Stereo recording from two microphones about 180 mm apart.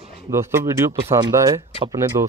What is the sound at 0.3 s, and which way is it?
Speech, 15° right (ahead or behind).